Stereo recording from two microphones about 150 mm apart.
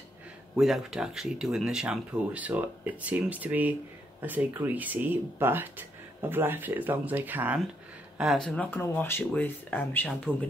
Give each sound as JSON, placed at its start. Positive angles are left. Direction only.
{"t": 0.6, "sound": "speech", "side_deg": 0}
{"t": 8.2, "sound": "speech", "side_deg": 0}